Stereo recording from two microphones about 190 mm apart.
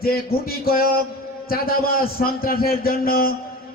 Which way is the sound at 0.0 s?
50° left (ahead or behind).